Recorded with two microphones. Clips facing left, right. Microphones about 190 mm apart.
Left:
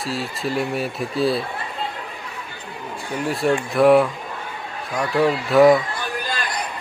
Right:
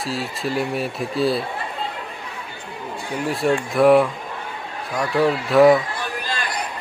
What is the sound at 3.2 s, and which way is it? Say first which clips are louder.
Speech: even; centre (ahead or behind).